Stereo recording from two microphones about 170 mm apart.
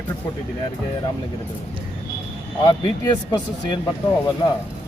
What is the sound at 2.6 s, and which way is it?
Speech, 25° left (ahead or behind).